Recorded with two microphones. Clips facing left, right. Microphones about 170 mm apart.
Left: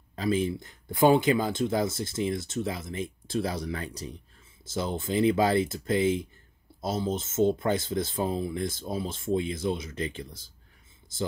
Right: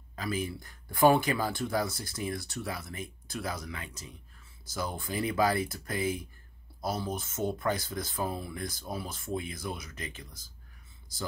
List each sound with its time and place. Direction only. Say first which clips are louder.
0.1 s speech: left 7 dB; 30° left (ahead or behind)
4.6 s speech: left 5 dB; 25° left (ahead or behind)